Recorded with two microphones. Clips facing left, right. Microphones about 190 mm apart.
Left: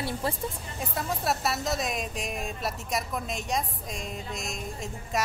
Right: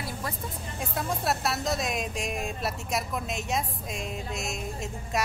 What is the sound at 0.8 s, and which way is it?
Speech, centre (ahead or behind).